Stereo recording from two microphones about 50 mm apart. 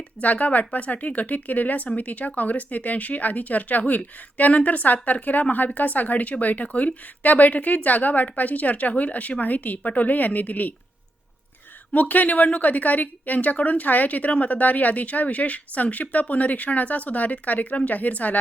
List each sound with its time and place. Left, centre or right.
0.2 s a woman's voice: left
11.9 s a woman's voice: left